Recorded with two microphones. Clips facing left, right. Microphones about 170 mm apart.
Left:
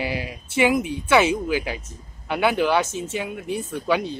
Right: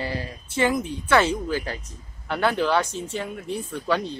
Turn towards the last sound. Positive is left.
turn(degrees=5)  # may be behind; listen again after turning